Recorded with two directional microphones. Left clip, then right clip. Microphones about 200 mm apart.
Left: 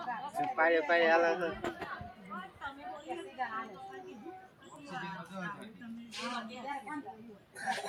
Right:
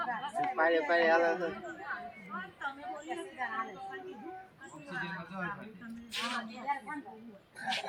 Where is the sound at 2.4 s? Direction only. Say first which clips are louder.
Right 5 dB; 45° right (ahead or behind).